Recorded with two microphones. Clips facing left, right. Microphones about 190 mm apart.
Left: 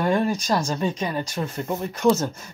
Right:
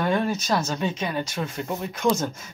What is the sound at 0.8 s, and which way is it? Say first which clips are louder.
Speech: left 2 dB; 5° right (ahead or behind).